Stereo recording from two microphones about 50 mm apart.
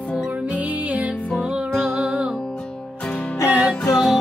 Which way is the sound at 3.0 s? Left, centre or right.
Left.